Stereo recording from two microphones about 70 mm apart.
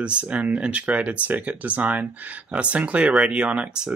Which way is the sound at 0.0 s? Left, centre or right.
Centre.